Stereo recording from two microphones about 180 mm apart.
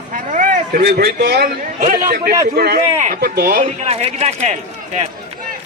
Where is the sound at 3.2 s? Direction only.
60° right (ahead or behind).